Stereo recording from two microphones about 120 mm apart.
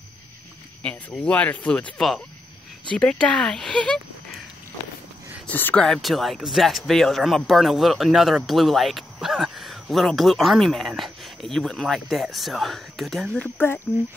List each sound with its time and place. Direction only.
0.8 s speech: 10° left (ahead or behind)
5.5 s speech: 15° left (ahead or behind)
5.9 s speech: centre (ahead or behind)
13.4 s speech: 15° left (ahead or behind)